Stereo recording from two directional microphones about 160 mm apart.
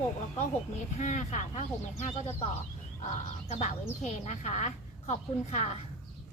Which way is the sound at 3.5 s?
50° left (ahead or behind).